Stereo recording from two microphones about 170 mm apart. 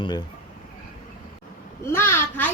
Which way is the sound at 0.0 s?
25° left (ahead or behind).